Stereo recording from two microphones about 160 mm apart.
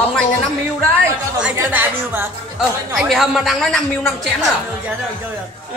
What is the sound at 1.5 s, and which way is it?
Speech, 15° right (ahead or behind).